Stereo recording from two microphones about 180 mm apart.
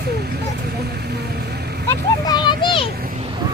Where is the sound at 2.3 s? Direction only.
25° left (ahead or behind).